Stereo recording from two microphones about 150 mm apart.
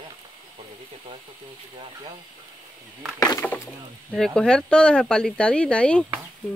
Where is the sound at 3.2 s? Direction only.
25° left (ahead or behind).